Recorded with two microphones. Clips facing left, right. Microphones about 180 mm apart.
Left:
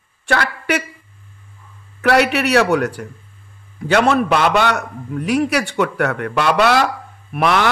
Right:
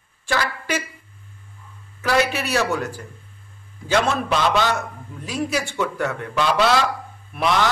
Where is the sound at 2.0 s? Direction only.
70° left (ahead or behind).